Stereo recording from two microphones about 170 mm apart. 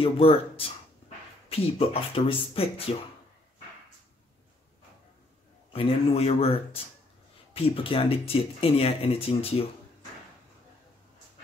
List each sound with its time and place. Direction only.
0.0 s speech: 35° left (ahead or behind)
5.7 s speech: 35° left (ahead or behind)